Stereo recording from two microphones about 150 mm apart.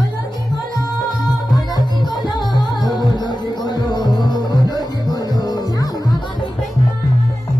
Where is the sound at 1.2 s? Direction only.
25° left (ahead or behind).